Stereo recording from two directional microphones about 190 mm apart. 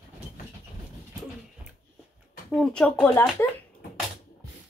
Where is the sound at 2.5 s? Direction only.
5° left (ahead or behind).